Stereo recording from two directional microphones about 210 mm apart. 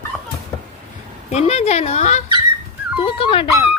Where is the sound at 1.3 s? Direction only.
30° left (ahead or behind).